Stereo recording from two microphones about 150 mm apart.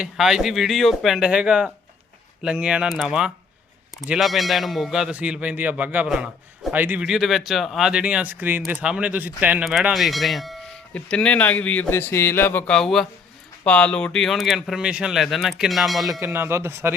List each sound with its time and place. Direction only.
0.0 s a man's voice: 5° right (ahead or behind)
16.2 s speech: 15° right (ahead or behind)